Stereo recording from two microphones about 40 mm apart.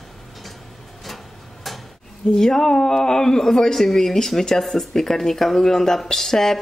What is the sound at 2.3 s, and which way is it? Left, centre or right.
Speech, centre.